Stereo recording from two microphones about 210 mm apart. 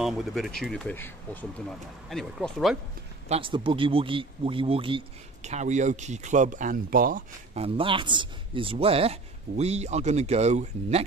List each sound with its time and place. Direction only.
0.0 s speech: centre (ahead or behind)
3.3 s a man's voice: 25° right (ahead or behind); by 7.6 s 40° right (ahead or behind)
7.6 s speech: 25° right (ahead or behind)